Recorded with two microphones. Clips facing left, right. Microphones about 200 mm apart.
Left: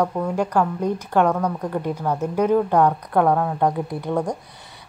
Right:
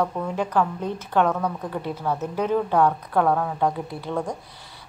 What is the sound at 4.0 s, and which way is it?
Speech, 15° left (ahead or behind).